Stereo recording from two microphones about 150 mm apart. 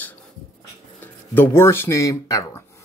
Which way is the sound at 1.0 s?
15° left (ahead or behind).